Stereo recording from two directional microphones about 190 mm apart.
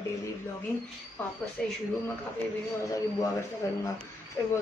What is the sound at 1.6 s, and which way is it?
Speech, 5° left (ahead or behind).